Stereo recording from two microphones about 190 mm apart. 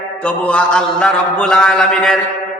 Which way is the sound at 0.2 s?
5° left (ahead or behind).